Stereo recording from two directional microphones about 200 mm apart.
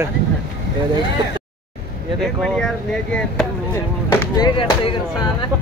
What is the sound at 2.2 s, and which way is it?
Speech, 5° left (ahead or behind).